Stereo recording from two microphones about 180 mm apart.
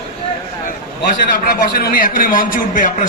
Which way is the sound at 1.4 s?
55° left (ahead or behind).